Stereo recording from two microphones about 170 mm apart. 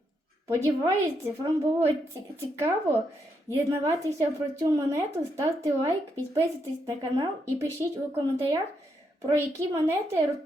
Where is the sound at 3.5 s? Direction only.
20° right (ahead or behind).